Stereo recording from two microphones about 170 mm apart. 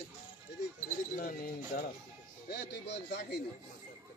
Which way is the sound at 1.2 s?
55° left (ahead or behind).